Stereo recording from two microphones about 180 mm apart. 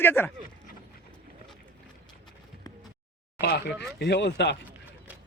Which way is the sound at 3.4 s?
10° right (ahead or behind).